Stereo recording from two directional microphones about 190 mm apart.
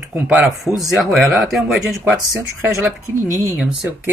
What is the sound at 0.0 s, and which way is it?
Speech, 10° right (ahead or behind).